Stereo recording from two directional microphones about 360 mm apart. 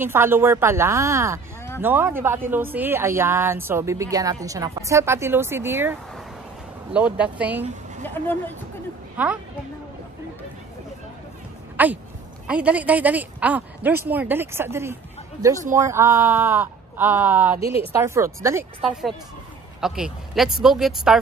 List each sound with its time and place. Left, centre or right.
0.0 s a woman's voice: centre
11.7 s a sound: centre
12.4 s speech: centre
17.6 s a woman's voice: centre
17.9 s speech: centre